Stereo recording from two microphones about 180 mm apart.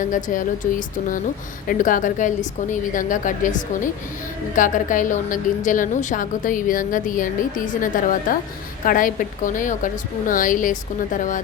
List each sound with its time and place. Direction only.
0.0 s a woman's voice: 45° left (ahead or behind)